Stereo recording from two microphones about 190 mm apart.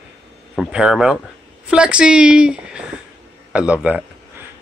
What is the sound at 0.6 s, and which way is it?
Speech, 5° right (ahead or behind).